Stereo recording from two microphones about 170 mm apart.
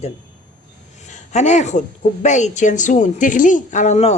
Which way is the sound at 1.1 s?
45° left (ahead or behind).